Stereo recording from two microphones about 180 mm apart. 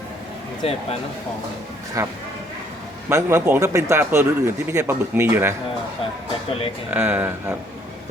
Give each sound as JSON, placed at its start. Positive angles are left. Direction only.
{"t": 0.6, "sound": "speech", "side_deg": 35}
{"t": 2.0, "sound": "speech", "side_deg": -15}
{"t": 6.9, "sound": "speech", "side_deg": -10}